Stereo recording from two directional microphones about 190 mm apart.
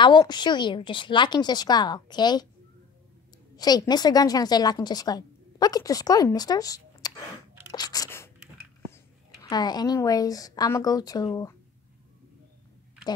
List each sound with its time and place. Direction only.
0.0 s a woman's voice: 25° left (ahead or behind)
3.5 s a woman's voice: 20° left (ahead or behind)
7.7 s a sound: 20° left (ahead or behind)
8.9 s a woman's voice: 20° left (ahead or behind)